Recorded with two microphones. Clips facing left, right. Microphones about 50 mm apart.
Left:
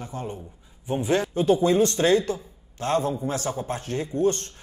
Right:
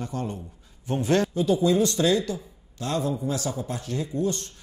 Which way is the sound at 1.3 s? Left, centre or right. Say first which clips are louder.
Left 2 dB; left.